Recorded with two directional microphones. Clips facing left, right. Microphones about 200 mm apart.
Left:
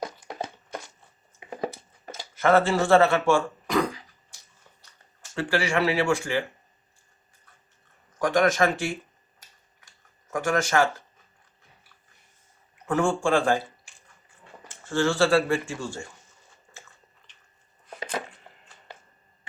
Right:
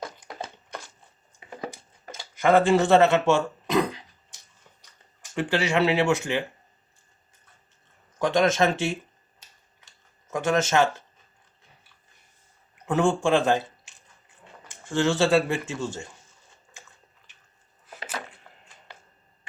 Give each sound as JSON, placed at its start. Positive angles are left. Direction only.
{"t": 2.3, "sound": "speech", "side_deg": -15}
{"t": 8.2, "sound": "speech", "side_deg": -25}
{"t": 10.3, "sound": "speech", "side_deg": -25}
{"t": 12.9, "sound": "speech", "side_deg": -20}
{"t": 17.3, "sound": "a sound", "side_deg": -10}